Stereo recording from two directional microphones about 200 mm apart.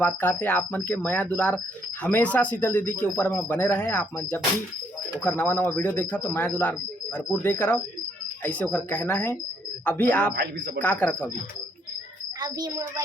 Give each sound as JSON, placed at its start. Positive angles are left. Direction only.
{"t": 0.0, "sound": "speech", "side_deg": 10}
{"t": 12.4, "sound": "a woman's voice", "side_deg": -20}